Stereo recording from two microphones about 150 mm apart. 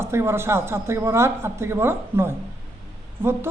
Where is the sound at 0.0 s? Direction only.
15° right (ahead or behind).